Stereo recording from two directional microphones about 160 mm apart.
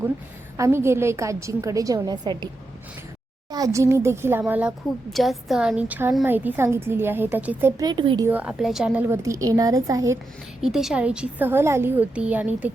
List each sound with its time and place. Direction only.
0.5 s a woman's voice: 15° right (ahead or behind)
3.5 s a woman's voice: 20° right (ahead or behind)
5.1 s a woman's voice: centre (ahead or behind)
7.9 s a woman's voice: 30° right (ahead or behind)
8.3 s a woman's voice: 5° right (ahead or behind)
10.6 s a woman's voice: centre (ahead or behind)